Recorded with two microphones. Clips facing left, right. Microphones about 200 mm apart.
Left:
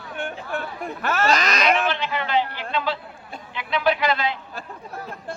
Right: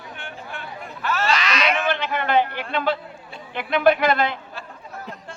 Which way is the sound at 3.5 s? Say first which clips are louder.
Right 5 dB; 55° right (ahead or behind).